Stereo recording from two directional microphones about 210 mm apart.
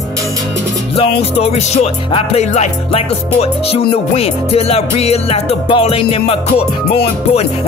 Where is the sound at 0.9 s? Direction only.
30° left (ahead or behind).